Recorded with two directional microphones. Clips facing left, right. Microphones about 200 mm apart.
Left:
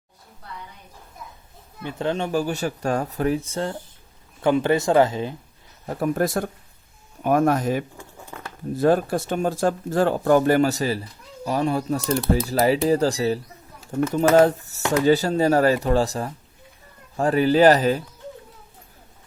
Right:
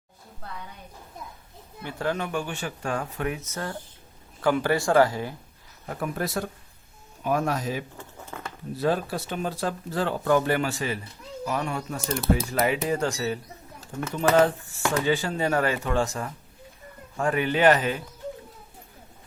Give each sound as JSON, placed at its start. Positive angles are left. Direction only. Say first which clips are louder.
{"t": 1.8, "sound": "speech", "louder": "left 4 dB", "side_deg": 20}
{"t": 5.8, "sound": "speech", "louder": "left 5 dB", "side_deg": 35}
{"t": 6.1, "sound": "speech", "louder": "left 6 dB", "side_deg": 50}